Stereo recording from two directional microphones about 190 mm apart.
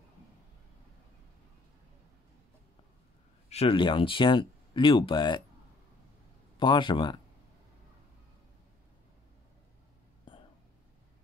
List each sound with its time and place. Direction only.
3.4 s speech: 30° left (ahead or behind)
6.6 s speech: 25° left (ahead or behind)